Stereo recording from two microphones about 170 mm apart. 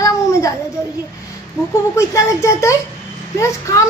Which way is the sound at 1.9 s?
15° left (ahead or behind).